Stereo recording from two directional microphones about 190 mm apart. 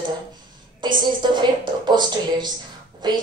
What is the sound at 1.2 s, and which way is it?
A woman's voice, 25° right (ahead or behind).